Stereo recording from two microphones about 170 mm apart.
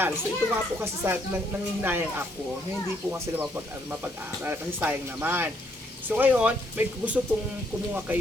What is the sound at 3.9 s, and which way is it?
A man's voice, 10° right (ahead or behind).